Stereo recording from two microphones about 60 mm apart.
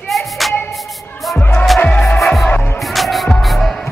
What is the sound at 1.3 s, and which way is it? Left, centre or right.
Music, centre.